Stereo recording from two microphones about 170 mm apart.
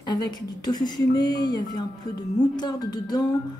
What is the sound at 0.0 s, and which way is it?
Speech, 25° left (ahead or behind).